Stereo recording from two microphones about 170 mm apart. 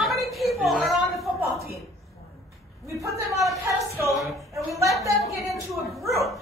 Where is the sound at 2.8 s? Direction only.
20° right (ahead or behind).